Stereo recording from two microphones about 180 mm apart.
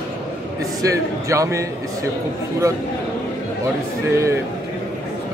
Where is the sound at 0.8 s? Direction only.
15° right (ahead or behind).